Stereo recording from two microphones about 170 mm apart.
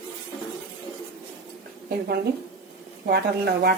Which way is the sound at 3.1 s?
70° right (ahead or behind).